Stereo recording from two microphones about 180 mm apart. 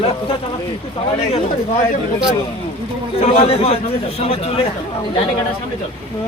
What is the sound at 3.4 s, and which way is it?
Speech, 35° left (ahead or behind).